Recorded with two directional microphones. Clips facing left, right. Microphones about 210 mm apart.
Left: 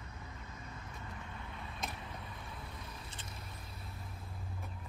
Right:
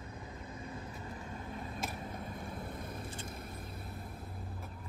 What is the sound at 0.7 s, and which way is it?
Vehicle, 35° right (ahead or behind).